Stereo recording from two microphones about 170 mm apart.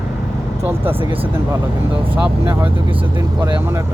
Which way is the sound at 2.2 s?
10° right (ahead or behind).